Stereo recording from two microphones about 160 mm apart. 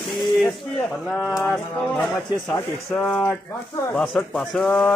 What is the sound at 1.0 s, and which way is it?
Speech, centre (ahead or behind).